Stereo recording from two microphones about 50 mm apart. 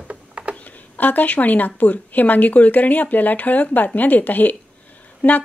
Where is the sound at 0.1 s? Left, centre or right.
Right.